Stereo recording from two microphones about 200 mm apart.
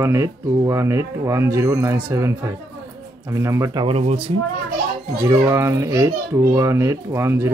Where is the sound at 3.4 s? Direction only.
15° right (ahead or behind).